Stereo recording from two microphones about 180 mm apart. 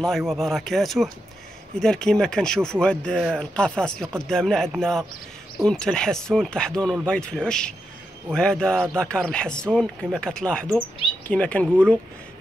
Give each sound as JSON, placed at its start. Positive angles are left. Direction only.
{"t": 0.3, "sound": "speech", "side_deg": 0}